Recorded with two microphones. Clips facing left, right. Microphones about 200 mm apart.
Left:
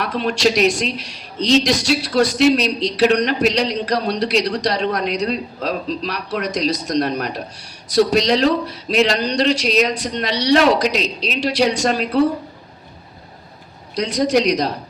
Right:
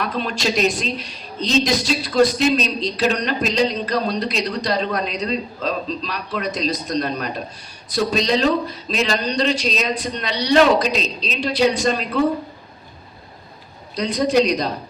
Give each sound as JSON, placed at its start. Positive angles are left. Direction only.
{"t": 0.0, "sound": "a man's voice", "side_deg": 80}
{"t": 13.9, "sound": "a man's voice", "side_deg": 85}